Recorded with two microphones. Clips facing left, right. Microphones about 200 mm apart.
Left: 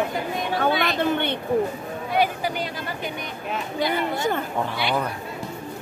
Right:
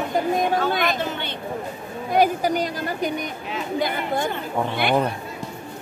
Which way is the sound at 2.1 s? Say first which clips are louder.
Right 4 dB; 45° right (ahead or behind).